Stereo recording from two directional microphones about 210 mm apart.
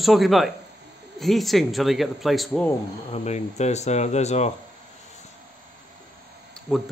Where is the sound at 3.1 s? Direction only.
30° left (ahead or behind).